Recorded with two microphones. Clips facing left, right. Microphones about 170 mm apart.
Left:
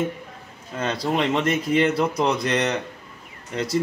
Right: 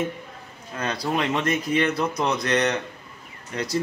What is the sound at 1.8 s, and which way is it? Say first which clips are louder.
Speech: left 3 dB; 30° left (ahead or behind).